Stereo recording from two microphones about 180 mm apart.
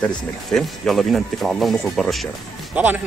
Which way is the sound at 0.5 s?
Centre (ahead or behind).